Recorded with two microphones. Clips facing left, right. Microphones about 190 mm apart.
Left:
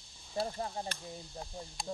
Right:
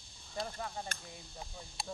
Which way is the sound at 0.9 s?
45° right (ahead or behind).